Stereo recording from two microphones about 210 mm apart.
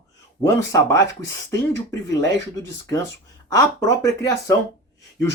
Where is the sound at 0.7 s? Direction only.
15° left (ahead or behind).